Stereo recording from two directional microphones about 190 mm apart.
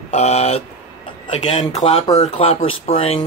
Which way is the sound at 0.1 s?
35° left (ahead or behind).